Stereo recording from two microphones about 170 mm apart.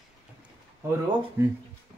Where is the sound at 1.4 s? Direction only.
15° right (ahead or behind).